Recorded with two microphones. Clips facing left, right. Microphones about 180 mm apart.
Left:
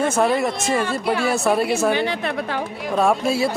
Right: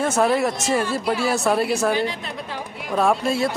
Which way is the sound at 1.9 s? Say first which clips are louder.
Left 3 dB; 65° left (ahead or behind).